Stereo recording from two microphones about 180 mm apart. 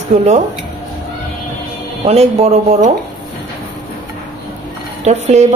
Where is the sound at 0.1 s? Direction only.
40° right (ahead or behind).